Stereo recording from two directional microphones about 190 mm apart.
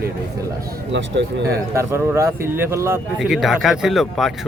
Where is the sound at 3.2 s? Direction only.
Centre (ahead or behind).